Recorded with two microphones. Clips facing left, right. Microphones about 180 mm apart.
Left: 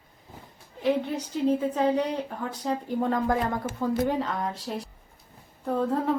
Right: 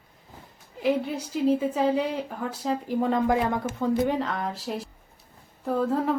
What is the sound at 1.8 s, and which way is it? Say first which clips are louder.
Speech: even; 5° right (ahead or behind).